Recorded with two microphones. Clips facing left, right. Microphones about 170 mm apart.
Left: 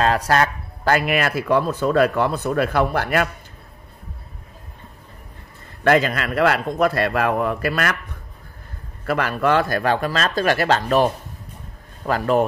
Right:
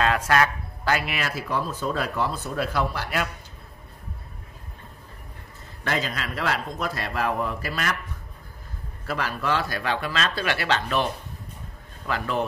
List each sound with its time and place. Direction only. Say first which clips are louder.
0.0 s speech: left 3 dB; 35° left (ahead or behind); by 3.3 s 55° left (ahead or behind)
5.9 s speech: left 10 dB; 65° left (ahead or behind)
9.0 s speech: left 8 dB; 60° left (ahead or behind); by 11.1 s 45° left (ahead or behind)
12.1 s speech: left 8 dB; 45° left (ahead or behind)